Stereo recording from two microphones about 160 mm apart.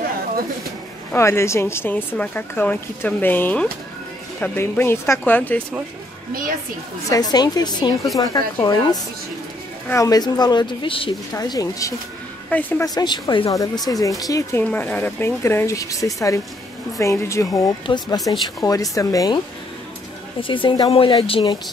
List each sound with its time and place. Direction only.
1.1 s speech: 15° left (ahead or behind)
7.1 s speech: 25° left (ahead or behind)
9.8 s speech: 20° left (ahead or behind)
11.3 s speech: 20° left (ahead or behind)
12.4 s a woman's voice: 10° left (ahead or behind)
12.8 s speech: 25° left (ahead or behind)
14.6 s a woman's voice: 10° left (ahead or behind); by 21.5 s 35° left (ahead or behind)